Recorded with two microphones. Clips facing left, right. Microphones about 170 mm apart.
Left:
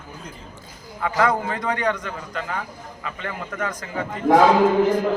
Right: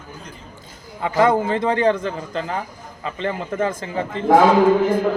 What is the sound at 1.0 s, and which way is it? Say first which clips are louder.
A man's voice: right 4 dB; 25° right (ahead or behind).